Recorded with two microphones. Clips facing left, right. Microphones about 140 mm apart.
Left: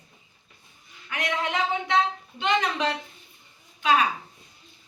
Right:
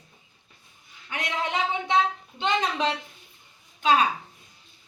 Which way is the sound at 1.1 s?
25° right (ahead or behind).